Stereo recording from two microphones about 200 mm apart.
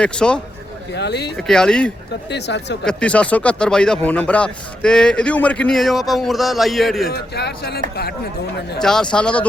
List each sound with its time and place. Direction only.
0.0 s speech: 5° left (ahead or behind)
0.9 s a man's voice: 55° left (ahead or behind)
1.4 s speech: 5° left (ahead or behind)
2.3 s a man's voice: 60° left (ahead or behind)
2.8 s speech: 5° left (ahead or behind)
7.1 s a man's voice: 55° left (ahead or behind)
8.8 s speech: 5° left (ahead or behind)